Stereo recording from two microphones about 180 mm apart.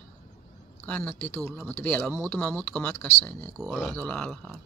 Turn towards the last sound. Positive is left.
turn(degrees=5)  # may be behind; listen again after turning